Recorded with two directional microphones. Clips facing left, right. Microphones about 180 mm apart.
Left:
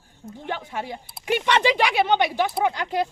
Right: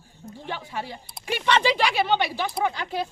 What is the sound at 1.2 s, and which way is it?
Speech, 15° left (ahead or behind).